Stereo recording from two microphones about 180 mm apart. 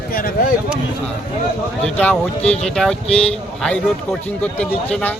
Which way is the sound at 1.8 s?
5° left (ahead or behind).